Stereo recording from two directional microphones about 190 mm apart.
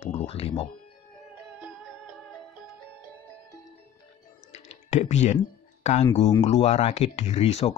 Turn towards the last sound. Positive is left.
turn(degrees=35)  # may be behind; listen again after turning